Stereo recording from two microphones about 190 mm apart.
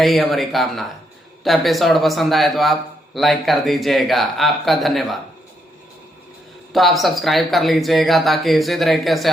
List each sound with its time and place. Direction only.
0.0 s speech: centre (ahead or behind)
6.7 s speech: centre (ahead or behind)